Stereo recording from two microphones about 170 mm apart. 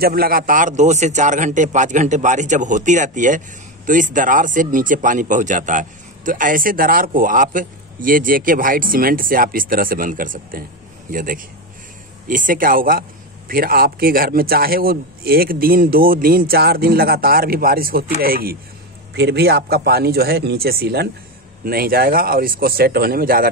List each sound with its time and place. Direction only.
0.0 s a man's voice: 60° right (ahead or behind)
19.1 s a man's voice: 75° right (ahead or behind)